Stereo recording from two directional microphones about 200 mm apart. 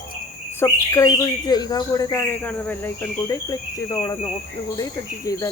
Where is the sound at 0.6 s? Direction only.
15° left (ahead or behind).